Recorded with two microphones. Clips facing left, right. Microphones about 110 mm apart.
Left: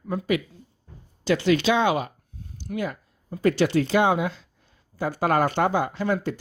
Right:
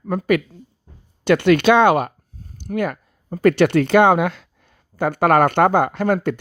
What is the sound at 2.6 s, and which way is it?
Speech, 55° right (ahead or behind).